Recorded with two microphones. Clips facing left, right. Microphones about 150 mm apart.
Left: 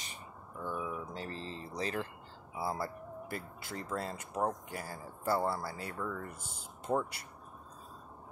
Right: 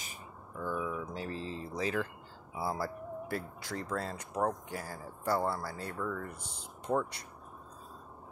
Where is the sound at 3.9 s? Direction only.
25° left (ahead or behind).